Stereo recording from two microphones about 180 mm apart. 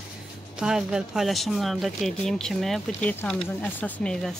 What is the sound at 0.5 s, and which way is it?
Speech, 5° right (ahead or behind).